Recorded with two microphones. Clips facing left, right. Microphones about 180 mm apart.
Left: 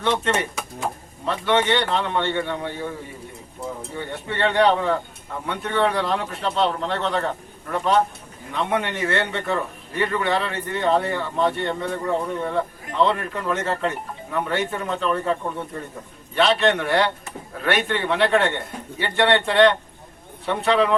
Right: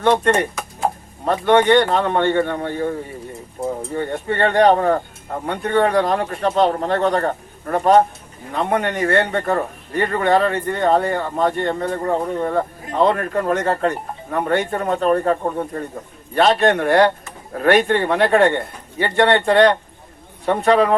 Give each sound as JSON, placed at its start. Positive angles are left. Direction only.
{"t": 0.0, "sound": "speech", "side_deg": -50}